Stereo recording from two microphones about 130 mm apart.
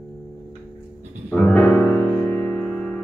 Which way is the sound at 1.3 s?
10° left (ahead or behind).